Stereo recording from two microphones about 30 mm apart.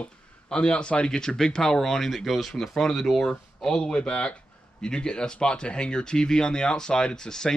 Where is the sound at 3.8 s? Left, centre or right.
Left.